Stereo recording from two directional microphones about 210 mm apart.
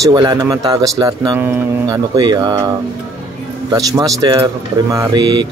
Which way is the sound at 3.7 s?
20° right (ahead or behind).